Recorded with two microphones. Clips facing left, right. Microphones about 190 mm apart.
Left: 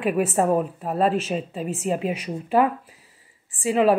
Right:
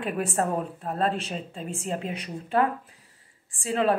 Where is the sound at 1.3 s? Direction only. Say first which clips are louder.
Left 7 dB; 10° left (ahead or behind).